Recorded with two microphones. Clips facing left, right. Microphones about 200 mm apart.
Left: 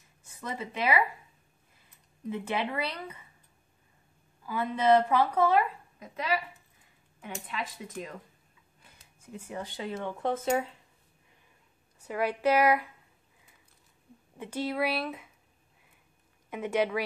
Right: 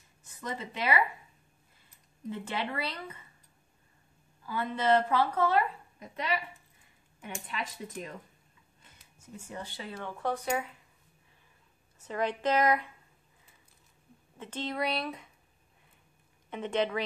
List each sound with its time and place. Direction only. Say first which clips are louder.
0.2 s speech: left 1 dB; 10° left (ahead or behind)
2.2 s a woman's voice: left 3 dB; 15° left (ahead or behind)
4.5 s a woman's voice: left 3 dB; 10° left (ahead or behind)
9.5 s speech: left 5 dB; 15° left (ahead or behind)
12.0 s a woman's voice: left 2 dB; 10° left (ahead or behind)
14.4 s speech: left 3 dB; 10° left (ahead or behind)
16.4 s a woman's voice: left 2 dB; 10° left (ahead or behind)